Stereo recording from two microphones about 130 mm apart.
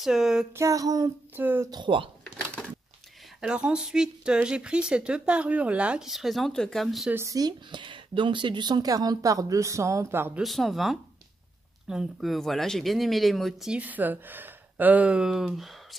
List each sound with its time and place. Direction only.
0.0 s speech: 5° right (ahead or behind)
0.6 s speech: 25° right (ahead or behind)
1.3 s speech: 15° right (ahead or behind)
1.7 s speech: 40° right (ahead or behind)
3.3 s speech: 5° right (ahead or behind)
7.1 s speech: 20° right (ahead or behind)
10.4 s speech: centre (ahead or behind)